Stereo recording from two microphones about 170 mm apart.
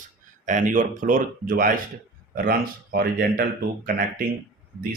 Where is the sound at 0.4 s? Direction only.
50° right (ahead or behind).